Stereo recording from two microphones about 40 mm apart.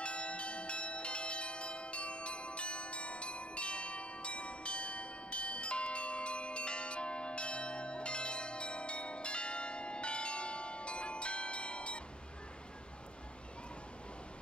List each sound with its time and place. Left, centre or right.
0.0 s church bell: left